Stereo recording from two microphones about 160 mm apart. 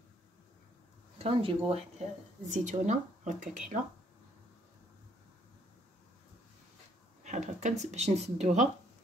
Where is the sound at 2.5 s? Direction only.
50° right (ahead or behind).